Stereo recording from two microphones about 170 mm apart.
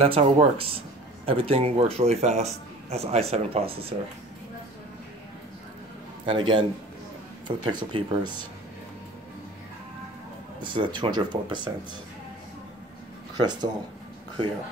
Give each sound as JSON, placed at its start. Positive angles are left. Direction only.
{"t": 0.0, "sound": "a man's voice", "side_deg": -40}
{"t": 6.2, "sound": "speech", "side_deg": -30}
{"t": 10.6, "sound": "speech", "side_deg": -30}
{"t": 13.4, "sound": "speech", "side_deg": -25}